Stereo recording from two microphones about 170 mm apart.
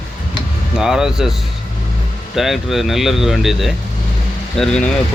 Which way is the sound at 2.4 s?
Centre (ahead or behind).